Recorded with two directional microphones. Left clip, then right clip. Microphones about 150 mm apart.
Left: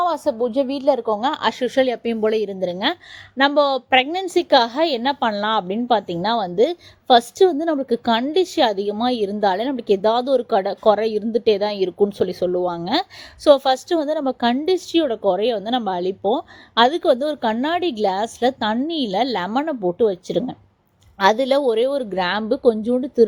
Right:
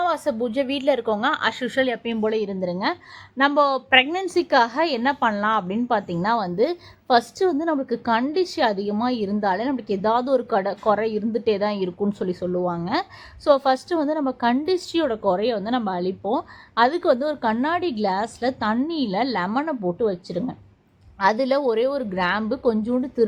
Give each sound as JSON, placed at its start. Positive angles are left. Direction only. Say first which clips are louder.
{"t": 0.0, "sound": "a woman's voice", "louder": "left 3 dB", "side_deg": 20}